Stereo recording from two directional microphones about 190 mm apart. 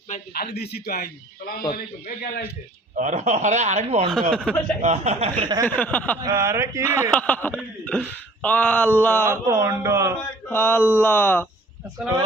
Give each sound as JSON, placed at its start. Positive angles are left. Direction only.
{"t": 0.3, "sound": "a man's voice", "side_deg": 55}
{"t": 2.9, "sound": "speech", "side_deg": -40}
{"t": 4.1, "sound": "speech", "side_deg": 0}
{"t": 4.8, "sound": "speech", "side_deg": -35}
{"t": 5.6, "sound": "speech", "side_deg": 10}
{"t": 6.2, "sound": "a sound", "side_deg": -15}
{"t": 7.1, "sound": "speech", "side_deg": 10}
{"t": 9.3, "sound": "a sound", "side_deg": -15}
{"t": 10.5, "sound": "speech", "side_deg": 10}